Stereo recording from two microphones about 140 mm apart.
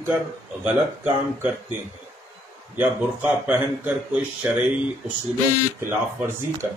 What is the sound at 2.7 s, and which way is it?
A man's voice, 10° right (ahead or behind).